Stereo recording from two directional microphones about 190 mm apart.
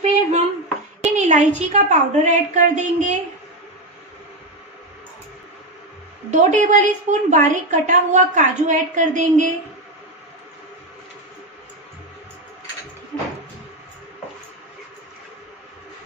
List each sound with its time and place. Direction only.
0.0 s a sound: 35° right (ahead or behind)
1.0 s a woman's voice: 40° right (ahead or behind)
6.3 s a woman's voice: 40° right (ahead or behind)